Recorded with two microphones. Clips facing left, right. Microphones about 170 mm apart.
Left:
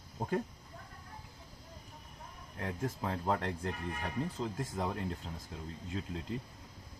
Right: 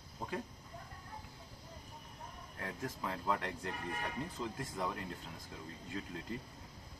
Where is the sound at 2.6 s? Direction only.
30° left (ahead or behind).